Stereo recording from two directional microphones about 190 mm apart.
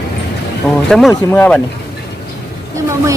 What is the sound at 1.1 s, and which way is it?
Speech, 15° left (ahead or behind).